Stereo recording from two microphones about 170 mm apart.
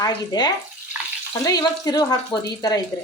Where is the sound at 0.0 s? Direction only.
25° left (ahead or behind).